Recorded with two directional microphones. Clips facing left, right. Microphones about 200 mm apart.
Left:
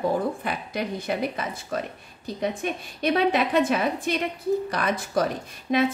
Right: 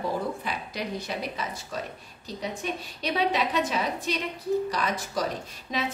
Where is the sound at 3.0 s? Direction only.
50° left (ahead or behind).